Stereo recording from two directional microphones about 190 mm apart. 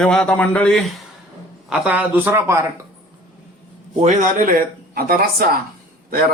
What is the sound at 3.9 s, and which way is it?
Speech, 40° right (ahead or behind).